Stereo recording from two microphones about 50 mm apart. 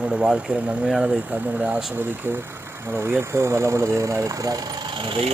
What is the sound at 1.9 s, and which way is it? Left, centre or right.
Speech, right.